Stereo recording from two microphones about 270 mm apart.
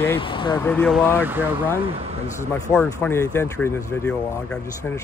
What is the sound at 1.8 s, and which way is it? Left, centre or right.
Speech, right.